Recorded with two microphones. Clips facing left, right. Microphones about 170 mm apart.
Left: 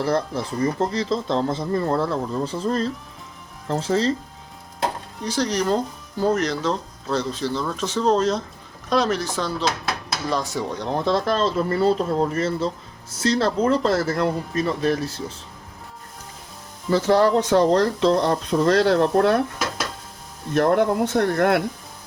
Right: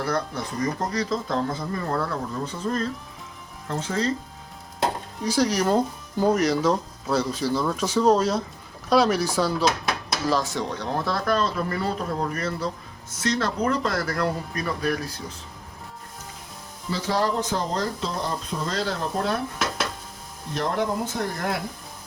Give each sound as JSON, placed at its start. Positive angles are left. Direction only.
{"t": 0.6, "sound": "speech", "side_deg": 25}
{"t": 5.2, "sound": "speech", "side_deg": -10}
{"t": 10.7, "sound": "speech", "side_deg": 15}
{"t": 16.9, "sound": "speech", "side_deg": 60}
{"t": 20.5, "sound": "speech", "side_deg": 55}